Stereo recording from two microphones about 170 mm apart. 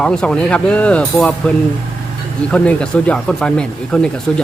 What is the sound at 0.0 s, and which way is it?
Speech, 5° left (ahead or behind).